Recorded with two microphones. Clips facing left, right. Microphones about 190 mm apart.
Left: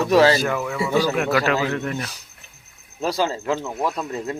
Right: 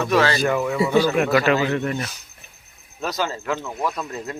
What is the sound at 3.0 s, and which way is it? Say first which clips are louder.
Speech: left 3 dB; 30° left (ahead or behind).